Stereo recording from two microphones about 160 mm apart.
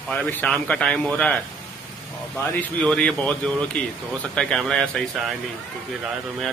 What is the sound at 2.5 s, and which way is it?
A man's voice, 10° left (ahead or behind).